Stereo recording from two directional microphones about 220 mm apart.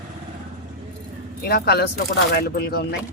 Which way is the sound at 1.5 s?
45° left (ahead or behind).